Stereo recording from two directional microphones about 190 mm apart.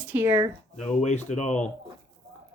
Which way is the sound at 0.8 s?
35° left (ahead or behind).